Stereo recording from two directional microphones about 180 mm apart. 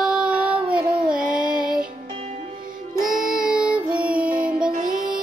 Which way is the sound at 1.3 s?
50° right (ahead or behind).